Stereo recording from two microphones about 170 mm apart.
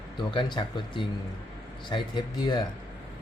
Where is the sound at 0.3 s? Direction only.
30° left (ahead or behind).